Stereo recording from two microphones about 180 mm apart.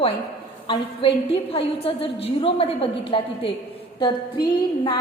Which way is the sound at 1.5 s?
30° left (ahead or behind).